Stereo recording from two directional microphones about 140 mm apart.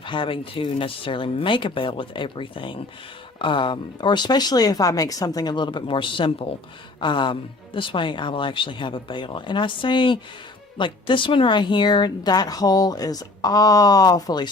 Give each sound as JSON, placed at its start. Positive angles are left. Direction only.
{"t": 0.0, "sound": "a woman's voice", "side_deg": 35}